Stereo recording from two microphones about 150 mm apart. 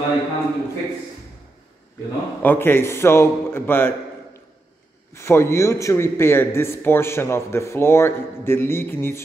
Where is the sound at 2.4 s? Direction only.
15° left (ahead or behind).